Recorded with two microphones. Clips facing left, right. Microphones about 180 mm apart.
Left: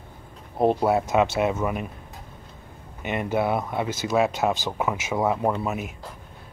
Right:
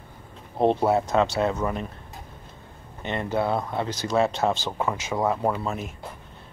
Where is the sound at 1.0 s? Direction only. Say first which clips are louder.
Left 1 dB; 20° left (ahead or behind).